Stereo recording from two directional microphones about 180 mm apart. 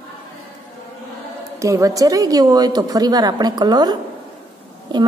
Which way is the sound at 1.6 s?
20° right (ahead or behind).